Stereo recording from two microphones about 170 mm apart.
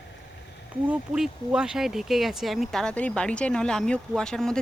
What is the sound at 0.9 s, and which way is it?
Speech, 5° right (ahead or behind).